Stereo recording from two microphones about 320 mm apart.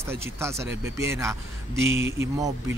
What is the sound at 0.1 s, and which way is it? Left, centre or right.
Speech, centre.